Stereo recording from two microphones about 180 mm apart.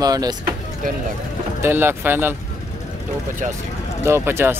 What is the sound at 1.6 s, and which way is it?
Speech, 10° right (ahead or behind).